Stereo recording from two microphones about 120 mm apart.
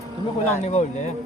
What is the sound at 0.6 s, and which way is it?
Speech, 80° left.